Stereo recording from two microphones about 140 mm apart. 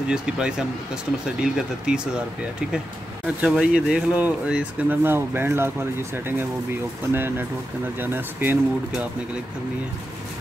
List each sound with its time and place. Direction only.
0.1 s speech: 5° right (ahead or behind)
3.3 s speech: 5° right (ahead or behind)